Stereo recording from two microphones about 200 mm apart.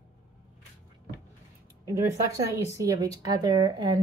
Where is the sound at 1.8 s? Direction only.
15° right (ahead or behind).